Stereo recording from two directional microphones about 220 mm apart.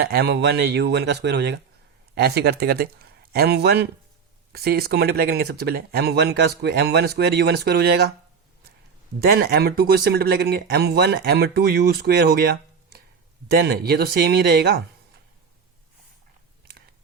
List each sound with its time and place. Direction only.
0.0 s a man's voice: 45° right (ahead or behind)
9.2 s speech: 45° right (ahead or behind)
13.6 s speech: 45° right (ahead or behind)